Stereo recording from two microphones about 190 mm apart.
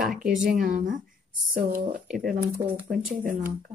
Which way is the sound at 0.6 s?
45° right (ahead or behind).